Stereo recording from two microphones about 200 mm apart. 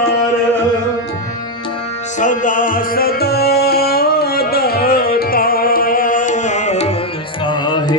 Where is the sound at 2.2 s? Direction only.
40° left (ahead or behind); by 8.0 s 20° left (ahead or behind).